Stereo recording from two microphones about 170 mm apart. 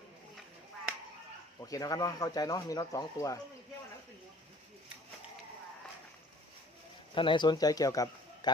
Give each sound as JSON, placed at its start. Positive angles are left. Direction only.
{"t": 1.6, "sound": "speech", "side_deg": 20}
{"t": 7.1, "sound": "a man's voice", "side_deg": 30}